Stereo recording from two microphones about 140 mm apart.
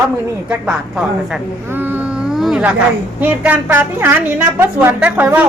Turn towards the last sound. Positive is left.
turn(degrees=-15)  # may be behind; listen again after turning